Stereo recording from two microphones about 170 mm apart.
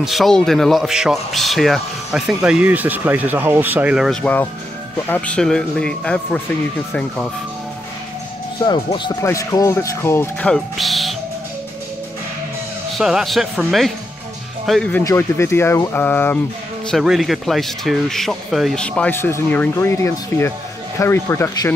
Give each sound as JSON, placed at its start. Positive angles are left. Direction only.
{"t": 0.0, "sound": "speech", "side_deg": 0}
{"t": 4.2, "sound": "speech", "side_deg": 10}
{"t": 8.6, "sound": "speech", "side_deg": 30}
{"t": 12.9, "sound": "speech", "side_deg": 0}
{"t": 16.9, "sound": "speech", "side_deg": 0}